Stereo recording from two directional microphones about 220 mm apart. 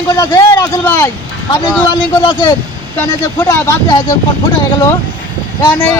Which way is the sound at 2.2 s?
20° left (ahead or behind).